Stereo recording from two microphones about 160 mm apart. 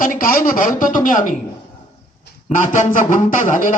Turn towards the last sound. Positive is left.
turn(degrees=55)  # may be behind; listen again after turning